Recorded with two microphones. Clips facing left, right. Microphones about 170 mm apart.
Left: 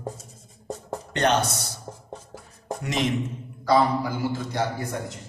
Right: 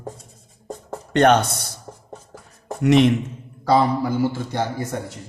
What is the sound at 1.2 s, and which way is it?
Speech, 60° right (ahead or behind).